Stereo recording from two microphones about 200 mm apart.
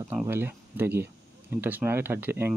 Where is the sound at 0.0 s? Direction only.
10° right (ahead or behind).